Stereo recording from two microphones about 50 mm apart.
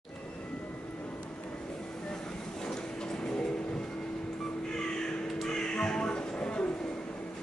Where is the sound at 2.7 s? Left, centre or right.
Centre.